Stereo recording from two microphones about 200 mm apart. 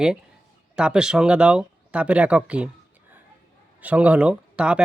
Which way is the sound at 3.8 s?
5° right (ahead or behind).